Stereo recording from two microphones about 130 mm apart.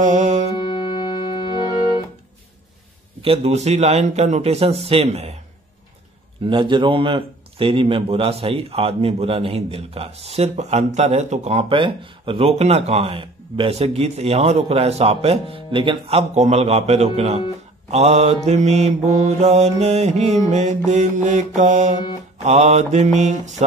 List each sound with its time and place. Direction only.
0.0 s music: 70° right (ahead or behind)
0.6 s music: 35° left (ahead or behind)
3.2 s mantra: 50° right (ahead or behind)
6.4 s speech: 40° right (ahead or behind); by 11.6 s 60° right (ahead or behind)
11.7 s speech: 40° right (ahead or behind)
17.9 s mantra: 55° right (ahead or behind)